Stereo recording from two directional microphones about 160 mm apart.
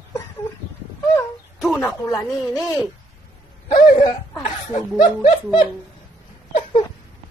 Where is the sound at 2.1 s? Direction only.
20° left (ahead or behind).